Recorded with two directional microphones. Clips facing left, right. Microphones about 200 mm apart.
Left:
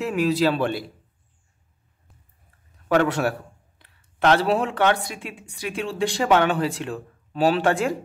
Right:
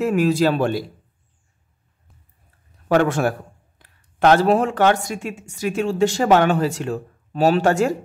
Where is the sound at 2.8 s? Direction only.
45° right (ahead or behind).